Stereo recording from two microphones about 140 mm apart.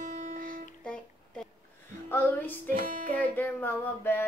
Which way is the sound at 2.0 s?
15° left (ahead or behind).